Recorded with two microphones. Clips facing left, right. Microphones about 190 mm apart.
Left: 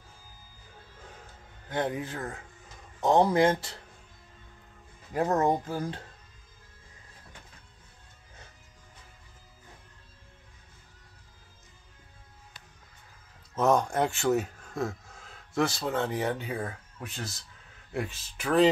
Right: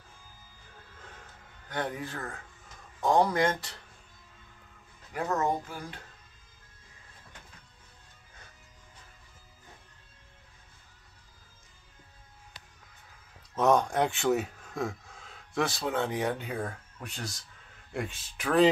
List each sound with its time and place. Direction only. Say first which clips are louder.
1.7 s a man's voice: left 4 dB; 25° left (ahead or behind)
5.1 s speech: left 4 dB; 30° left (ahead or behind)
13.6 s speech: even; centre (ahead or behind)